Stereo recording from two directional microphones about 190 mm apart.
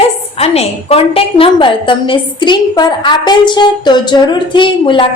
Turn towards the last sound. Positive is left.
turn(degrees=25)  # may be behind; listen again after turning